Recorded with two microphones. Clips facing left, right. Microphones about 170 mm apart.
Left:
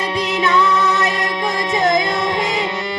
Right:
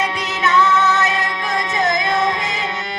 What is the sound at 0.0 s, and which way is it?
Music, 30° left (ahead or behind).